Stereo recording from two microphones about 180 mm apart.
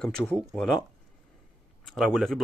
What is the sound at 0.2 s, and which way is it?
Speech, 10° left (ahead or behind).